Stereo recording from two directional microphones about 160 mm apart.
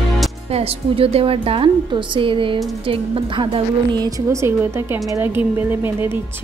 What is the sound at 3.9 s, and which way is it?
A woman's voice, 20° right (ahead or behind).